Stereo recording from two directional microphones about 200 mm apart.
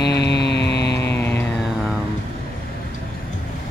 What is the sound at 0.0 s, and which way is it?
Mantra, 55° left (ahead or behind).